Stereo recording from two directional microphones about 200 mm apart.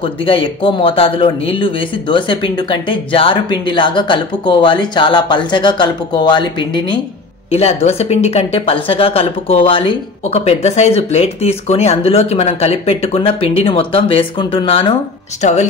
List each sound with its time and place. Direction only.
0.0 s speech: 25° left (ahead or behind)
15.4 s speech: 35° left (ahead or behind)